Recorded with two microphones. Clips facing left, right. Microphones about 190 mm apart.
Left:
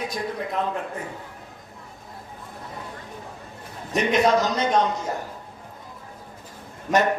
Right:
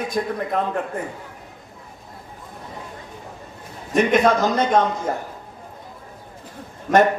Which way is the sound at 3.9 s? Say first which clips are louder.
Right 3 dB; 50° right (ahead or behind).